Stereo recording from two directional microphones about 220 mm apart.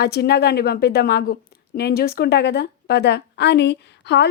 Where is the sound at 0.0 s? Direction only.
45° left (ahead or behind).